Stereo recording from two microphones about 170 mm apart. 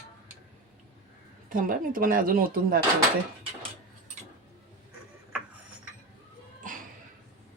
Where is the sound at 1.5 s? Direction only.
55° right (ahead or behind).